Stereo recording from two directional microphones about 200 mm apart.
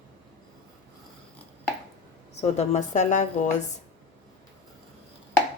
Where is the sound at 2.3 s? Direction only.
35° left (ahead or behind).